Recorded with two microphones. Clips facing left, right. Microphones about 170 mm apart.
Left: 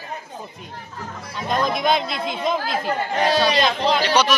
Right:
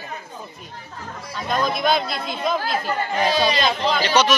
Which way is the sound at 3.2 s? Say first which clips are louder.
Left 2 dB; 70° left (ahead or behind).